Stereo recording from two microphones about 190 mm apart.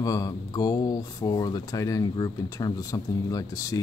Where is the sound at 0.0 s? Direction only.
20° left (ahead or behind).